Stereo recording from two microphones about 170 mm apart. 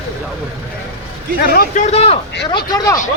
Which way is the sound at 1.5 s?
60° left (ahead or behind).